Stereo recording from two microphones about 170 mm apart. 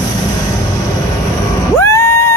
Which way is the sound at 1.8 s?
15° left (ahead or behind).